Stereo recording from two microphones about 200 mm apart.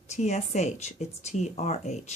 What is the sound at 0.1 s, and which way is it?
Speech, 35° left (ahead or behind).